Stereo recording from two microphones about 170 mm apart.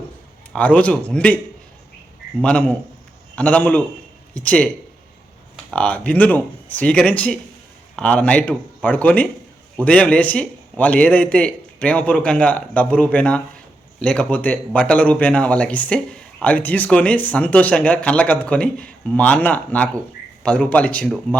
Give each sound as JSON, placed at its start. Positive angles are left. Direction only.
{"t": 0.5, "sound": "speech", "side_deg": 10}
{"t": 2.4, "sound": "speech", "side_deg": 5}
{"t": 5.7, "sound": "speech", "side_deg": 5}